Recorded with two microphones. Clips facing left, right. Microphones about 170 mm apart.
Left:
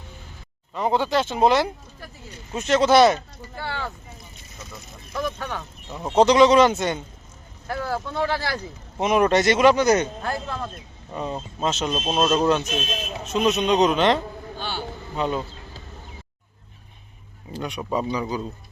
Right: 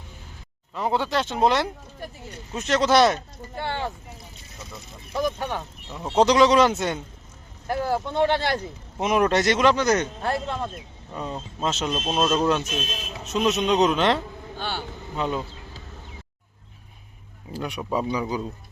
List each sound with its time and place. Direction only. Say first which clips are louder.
0.7 s speech: left 3 dB; centre (ahead or behind)
3.5 s speech: right 2 dB; 20° right (ahead or behind)
6.1 s speech: left 2 dB; centre (ahead or behind)
7.7 s speech: right 3 dB; 20° right (ahead or behind)
9.0 s speech: left 2 dB; centre (ahead or behind)
10.2 s speech: right 2 dB; 25° right (ahead or behind)
11.1 s speech: left 3 dB; 5° left (ahead or behind)
14.6 s a man's voice: even; 55° right (ahead or behind)
15.1 s speech: left 2 dB; centre (ahead or behind)
17.5 s speech: left 1 dB; 5° right (ahead or behind)